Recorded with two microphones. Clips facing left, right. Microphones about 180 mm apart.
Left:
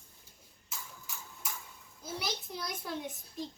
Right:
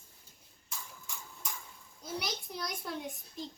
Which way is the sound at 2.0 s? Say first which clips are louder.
Even; centre (ahead or behind).